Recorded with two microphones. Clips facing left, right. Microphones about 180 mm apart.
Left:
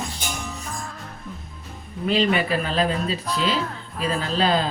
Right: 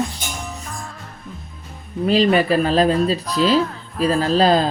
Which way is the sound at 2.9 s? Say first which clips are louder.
Right 7 dB; centre (ahead or behind).